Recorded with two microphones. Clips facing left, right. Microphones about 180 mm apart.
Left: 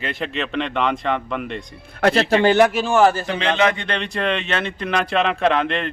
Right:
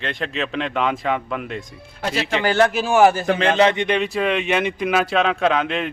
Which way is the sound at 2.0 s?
55° left (ahead or behind).